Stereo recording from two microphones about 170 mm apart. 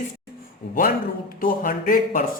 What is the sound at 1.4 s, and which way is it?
Speech, 55° left (ahead or behind).